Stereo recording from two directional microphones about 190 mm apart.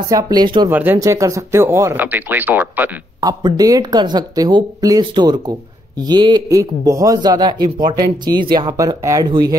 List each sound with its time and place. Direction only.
0.1 s a man's voice: 20° right (ahead or behind)
0.7 s speech: 10° right (ahead or behind)
3.2 s a man's voice: 20° right (ahead or behind)